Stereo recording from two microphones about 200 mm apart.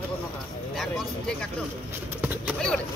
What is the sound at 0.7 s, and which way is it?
Speech, centre (ahead or behind).